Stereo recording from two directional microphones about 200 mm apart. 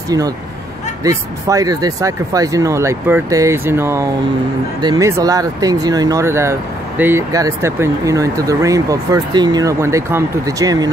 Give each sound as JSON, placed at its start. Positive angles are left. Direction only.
{"t": 1.0, "sound": "speech", "side_deg": -15}